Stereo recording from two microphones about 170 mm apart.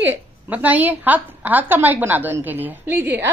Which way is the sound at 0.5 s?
10° right (ahead or behind).